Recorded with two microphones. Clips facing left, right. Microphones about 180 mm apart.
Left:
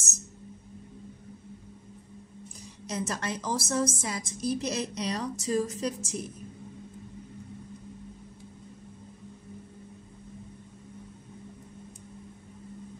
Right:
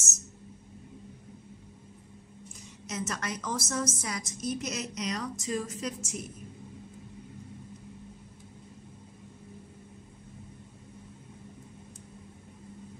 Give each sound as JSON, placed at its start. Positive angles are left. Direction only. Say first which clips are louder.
{"t": 2.9, "sound": "a woman's voice", "louder": "left 3 dB", "side_deg": 30}